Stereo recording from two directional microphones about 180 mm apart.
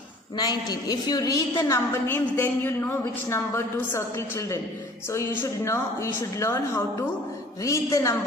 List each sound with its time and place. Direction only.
0.3 s a woman's voice: 20° left (ahead or behind)